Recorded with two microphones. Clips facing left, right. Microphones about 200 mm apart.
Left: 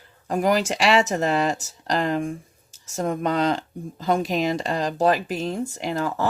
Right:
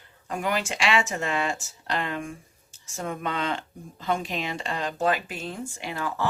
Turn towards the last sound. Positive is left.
turn(degrees=40)  # may be behind; listen again after turning